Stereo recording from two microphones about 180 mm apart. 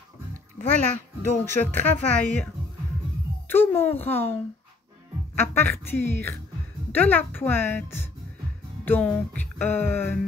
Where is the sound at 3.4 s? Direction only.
10° left (ahead or behind).